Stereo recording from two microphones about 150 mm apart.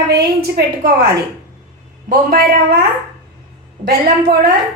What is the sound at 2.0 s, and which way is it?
Speech, 75° right (ahead or behind).